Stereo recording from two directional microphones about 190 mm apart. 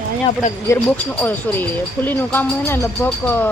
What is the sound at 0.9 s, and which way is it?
Speech, 10° left (ahead or behind).